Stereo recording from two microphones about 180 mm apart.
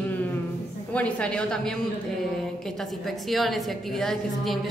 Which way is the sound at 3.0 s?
Centre (ahead or behind).